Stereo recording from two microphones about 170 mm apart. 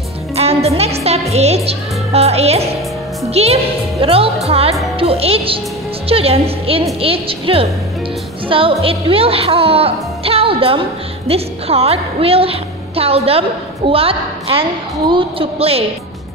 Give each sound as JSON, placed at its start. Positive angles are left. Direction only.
{"t": 0.4, "sound": "a woman's voice", "side_deg": -35}